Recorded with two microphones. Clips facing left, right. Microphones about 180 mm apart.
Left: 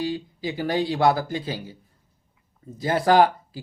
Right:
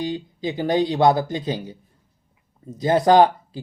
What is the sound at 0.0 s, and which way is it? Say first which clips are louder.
Speech: right 2 dB; 20° right (ahead or behind).